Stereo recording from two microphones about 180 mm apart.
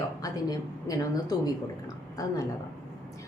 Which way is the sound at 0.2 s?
20° left (ahead or behind).